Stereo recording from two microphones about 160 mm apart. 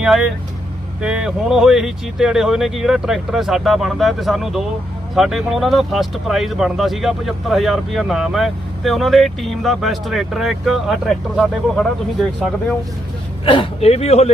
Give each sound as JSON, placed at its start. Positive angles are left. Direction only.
{"t": 0.0, "sound": "speech", "side_deg": -5}
{"t": 13.4, "sound": "speech", "side_deg": 30}